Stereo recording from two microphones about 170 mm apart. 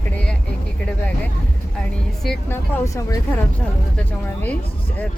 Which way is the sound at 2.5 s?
20° left (ahead or behind).